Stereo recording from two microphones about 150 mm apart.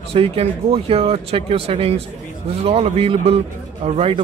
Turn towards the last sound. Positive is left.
turn(degrees=-40)  # may be behind; listen again after turning